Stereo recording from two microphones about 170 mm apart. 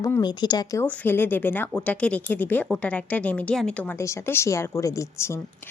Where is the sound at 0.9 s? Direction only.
10° left (ahead or behind).